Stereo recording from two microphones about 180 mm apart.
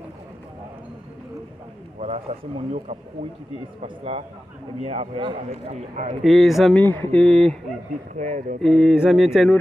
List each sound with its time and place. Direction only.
2.0 s speech: 35° right (ahead or behind)
6.2 s mantra: centre (ahead or behind)
6.8 s mantra: 10° left (ahead or behind)
8.1 s speech: 45° right (ahead or behind)
8.5 s mantra: centre (ahead or behind)